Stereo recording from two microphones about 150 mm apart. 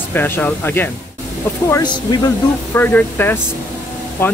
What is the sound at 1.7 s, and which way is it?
Speech, 25° left (ahead or behind).